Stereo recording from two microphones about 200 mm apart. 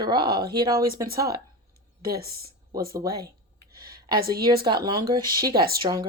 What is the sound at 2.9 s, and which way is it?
Speech, 20° right (ahead or behind).